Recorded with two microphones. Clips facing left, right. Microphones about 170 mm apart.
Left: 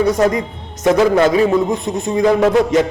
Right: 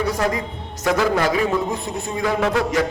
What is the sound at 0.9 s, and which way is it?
A man's voice, 20° left (ahead or behind).